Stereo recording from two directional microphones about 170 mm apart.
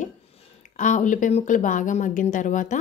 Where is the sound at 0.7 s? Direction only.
45° left (ahead or behind).